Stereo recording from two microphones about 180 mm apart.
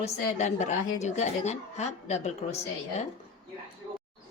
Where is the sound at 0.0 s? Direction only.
40° left (ahead or behind).